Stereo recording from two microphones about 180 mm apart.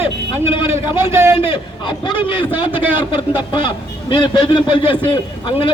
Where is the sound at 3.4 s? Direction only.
25° left (ahead or behind).